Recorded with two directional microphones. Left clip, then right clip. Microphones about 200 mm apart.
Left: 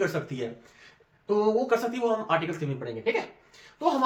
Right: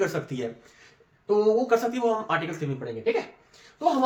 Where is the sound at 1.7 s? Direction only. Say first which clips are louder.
Right 2 dB; 20° right (ahead or behind).